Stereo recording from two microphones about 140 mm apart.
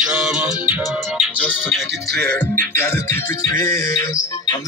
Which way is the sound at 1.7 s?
10° left (ahead or behind).